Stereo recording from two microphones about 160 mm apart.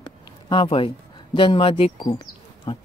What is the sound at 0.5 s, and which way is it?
Speech, 30° left (ahead or behind).